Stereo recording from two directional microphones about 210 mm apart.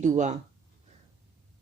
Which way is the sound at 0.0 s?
35° right (ahead or behind).